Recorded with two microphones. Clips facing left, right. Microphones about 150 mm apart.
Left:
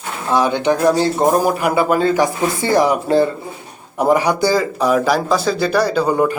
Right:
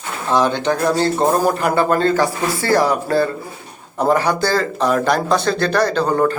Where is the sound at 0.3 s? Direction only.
10° left (ahead or behind).